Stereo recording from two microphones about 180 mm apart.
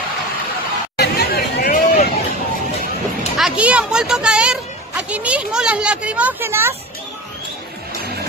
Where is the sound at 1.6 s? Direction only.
45° left (ahead or behind).